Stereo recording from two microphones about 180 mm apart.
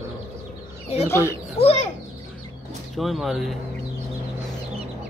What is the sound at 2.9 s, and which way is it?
Speech, centre (ahead or behind).